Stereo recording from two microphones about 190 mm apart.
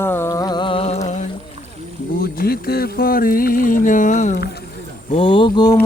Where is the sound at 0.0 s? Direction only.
10° left (ahead or behind); by 1.3 s 40° left (ahead or behind).